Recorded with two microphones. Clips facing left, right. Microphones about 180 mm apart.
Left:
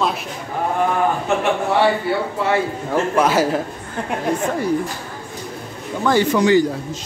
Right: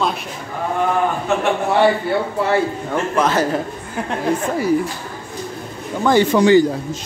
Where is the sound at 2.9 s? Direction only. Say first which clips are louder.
Left 4 dB; 10° left (ahead or behind).